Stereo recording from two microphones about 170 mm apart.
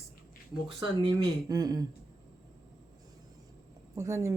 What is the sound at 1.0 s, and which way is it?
Speech, 20° right (ahead or behind).